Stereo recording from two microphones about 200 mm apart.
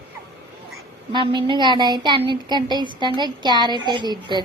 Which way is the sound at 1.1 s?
25° right (ahead or behind).